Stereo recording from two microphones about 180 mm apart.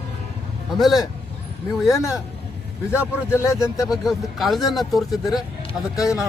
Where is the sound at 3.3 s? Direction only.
15° left (ahead or behind).